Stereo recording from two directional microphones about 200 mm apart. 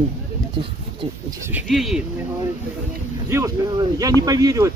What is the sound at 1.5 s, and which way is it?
Speech, centre (ahead or behind).